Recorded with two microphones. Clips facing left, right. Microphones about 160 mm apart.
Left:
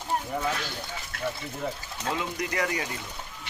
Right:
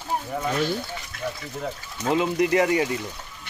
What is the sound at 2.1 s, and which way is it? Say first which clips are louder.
Speech: right 10 dB; 25° right (ahead or behind).